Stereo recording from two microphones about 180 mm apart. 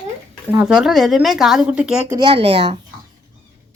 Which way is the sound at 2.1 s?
25° right (ahead or behind).